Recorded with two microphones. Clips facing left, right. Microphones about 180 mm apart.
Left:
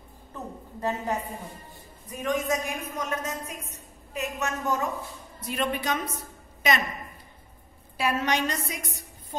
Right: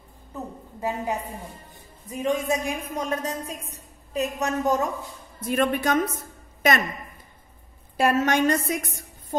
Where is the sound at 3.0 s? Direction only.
35° right (ahead or behind).